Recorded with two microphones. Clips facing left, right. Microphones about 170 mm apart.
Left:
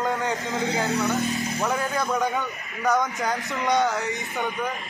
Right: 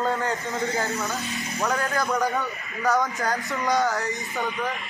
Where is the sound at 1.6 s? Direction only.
5° left (ahead or behind).